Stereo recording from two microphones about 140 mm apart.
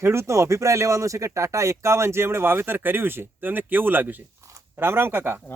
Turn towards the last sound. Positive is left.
turn(degrees=-15)  # may be behind; listen again after turning